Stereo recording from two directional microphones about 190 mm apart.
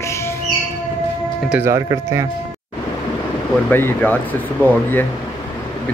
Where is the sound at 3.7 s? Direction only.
10° left (ahead or behind).